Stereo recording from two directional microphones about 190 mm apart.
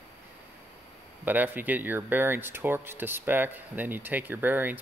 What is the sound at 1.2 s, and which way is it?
Speech, 10° right (ahead or behind).